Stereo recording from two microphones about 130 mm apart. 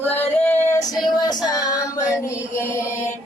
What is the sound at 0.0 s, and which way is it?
Female singing, 15° left (ahead or behind).